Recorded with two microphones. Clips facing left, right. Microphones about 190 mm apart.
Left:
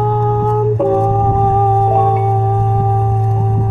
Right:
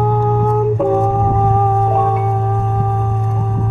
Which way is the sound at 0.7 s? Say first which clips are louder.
Left 1 dB; 10° left (ahead or behind).